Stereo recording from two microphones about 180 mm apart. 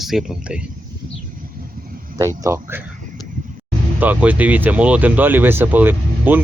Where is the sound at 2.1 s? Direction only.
15° right (ahead or behind).